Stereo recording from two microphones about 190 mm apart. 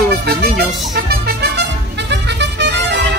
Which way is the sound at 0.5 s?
60° right (ahead or behind).